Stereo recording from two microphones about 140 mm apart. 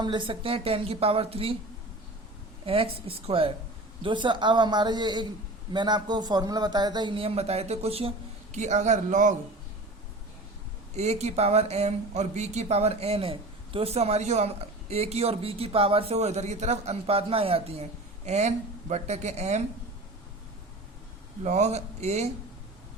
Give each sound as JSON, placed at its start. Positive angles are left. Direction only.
{"t": 0.0, "sound": "speech", "side_deg": -35}
{"t": 2.6, "sound": "a man's voice", "side_deg": -40}
{"t": 8.5, "sound": "a man's voice", "side_deg": -55}
{"t": 10.9, "sound": "speech", "side_deg": -50}
{"t": 21.4, "sound": "speech", "side_deg": -55}